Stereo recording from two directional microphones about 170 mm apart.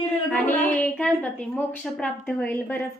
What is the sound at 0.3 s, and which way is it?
A woman's voice, 10° left (ahead or behind).